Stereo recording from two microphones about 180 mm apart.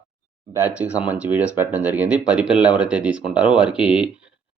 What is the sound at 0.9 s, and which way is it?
Speech, 10° right (ahead or behind).